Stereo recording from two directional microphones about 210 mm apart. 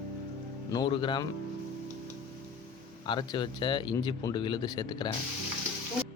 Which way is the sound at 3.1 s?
20° left (ahead or behind).